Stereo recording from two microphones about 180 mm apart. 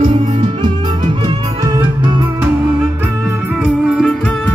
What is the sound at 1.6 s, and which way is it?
Music, 20° right (ahead or behind).